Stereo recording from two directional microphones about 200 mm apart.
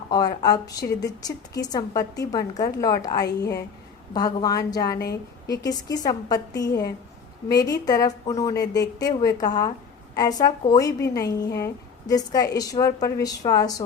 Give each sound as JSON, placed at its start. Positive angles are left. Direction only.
{"t": 0.1, "sound": "a woman's voice", "side_deg": 20}